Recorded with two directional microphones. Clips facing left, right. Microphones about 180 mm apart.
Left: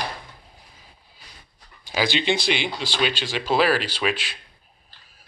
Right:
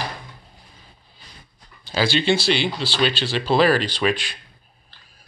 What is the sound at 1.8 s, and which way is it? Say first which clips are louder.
Speech: right 3 dB; 15° left (ahead or behind).